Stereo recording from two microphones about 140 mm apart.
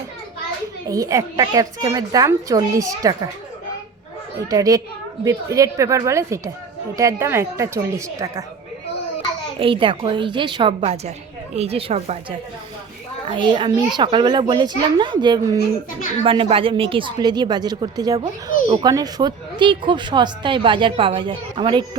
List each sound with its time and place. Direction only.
0.9 s a woman's voice: 25° right (ahead or behind)
4.4 s a woman's voice: 25° right (ahead or behind)
9.6 s speech: 40° right (ahead or behind)
13.2 s speech: 35° right (ahead or behind)